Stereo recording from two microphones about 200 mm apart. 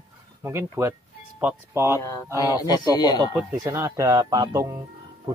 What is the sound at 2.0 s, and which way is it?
Speech, 15° left (ahead or behind).